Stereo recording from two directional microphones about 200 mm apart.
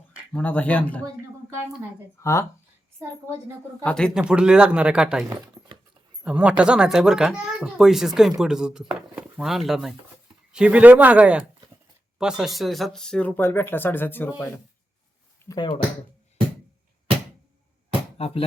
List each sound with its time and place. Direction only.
0.3 s speech: 5° left (ahead or behind)
2.2 s speech: 15° left (ahead or behind)
3.8 s speech: 5° left (ahead or behind)
15.4 s speech: 20° left (ahead or behind)
18.2 s speech: 30° left (ahead or behind)